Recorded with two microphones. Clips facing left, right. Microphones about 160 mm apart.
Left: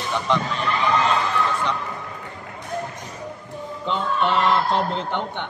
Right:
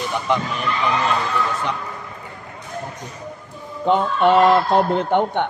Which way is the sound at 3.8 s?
50° right (ahead or behind).